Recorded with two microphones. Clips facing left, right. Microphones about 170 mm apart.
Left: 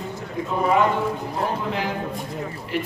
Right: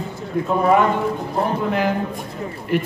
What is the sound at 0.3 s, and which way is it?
Speech, 60° right (ahead or behind).